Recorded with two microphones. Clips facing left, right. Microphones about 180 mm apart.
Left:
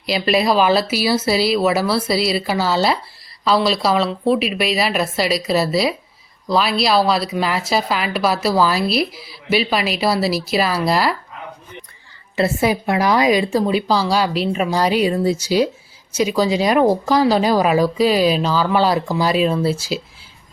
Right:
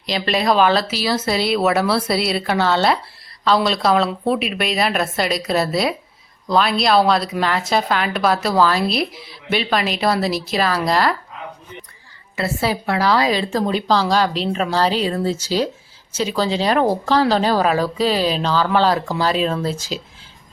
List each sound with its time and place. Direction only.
0.0 s a woman's voice: 10° left (ahead or behind)
12.4 s speech: 15° left (ahead or behind)